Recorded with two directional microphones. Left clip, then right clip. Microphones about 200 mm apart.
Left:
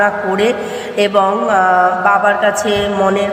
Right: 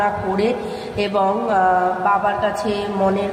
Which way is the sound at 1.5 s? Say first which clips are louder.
Left 6 dB; 20° left (ahead or behind).